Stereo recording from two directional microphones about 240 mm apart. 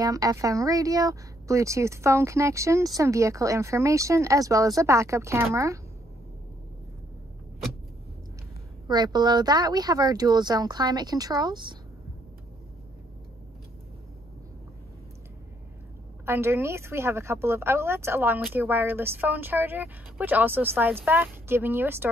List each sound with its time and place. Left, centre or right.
0.0 s speech: centre
8.8 s speech: centre
16.3 s speech: centre